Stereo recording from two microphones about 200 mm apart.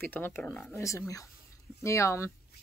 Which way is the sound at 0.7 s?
15° left (ahead or behind).